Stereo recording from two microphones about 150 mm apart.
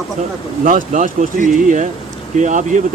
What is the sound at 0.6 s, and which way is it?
Speech, 60° right (ahead or behind).